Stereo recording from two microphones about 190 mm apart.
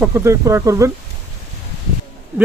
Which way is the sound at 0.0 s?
15° right (ahead or behind).